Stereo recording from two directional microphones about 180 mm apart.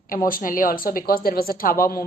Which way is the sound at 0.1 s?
50° left (ahead or behind).